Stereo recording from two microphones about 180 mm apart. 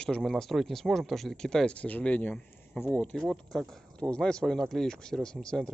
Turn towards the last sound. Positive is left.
turn(degrees=5)  # may be behind; listen again after turning